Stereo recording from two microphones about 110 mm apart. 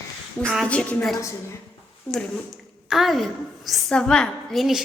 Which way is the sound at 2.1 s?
20° left (ahead or behind).